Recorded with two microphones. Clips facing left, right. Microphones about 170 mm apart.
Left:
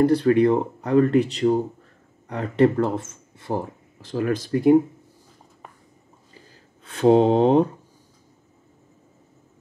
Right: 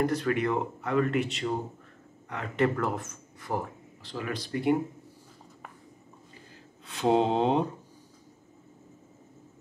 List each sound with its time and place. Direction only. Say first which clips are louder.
0.0 s speech: left 10 dB; 30° left (ahead or behind)
4.0 s speech: left 11 dB; 45° left (ahead or behind)
6.9 s speech: left 8 dB; 50° left (ahead or behind)